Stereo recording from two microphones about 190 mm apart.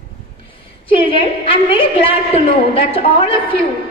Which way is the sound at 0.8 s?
30° left (ahead or behind).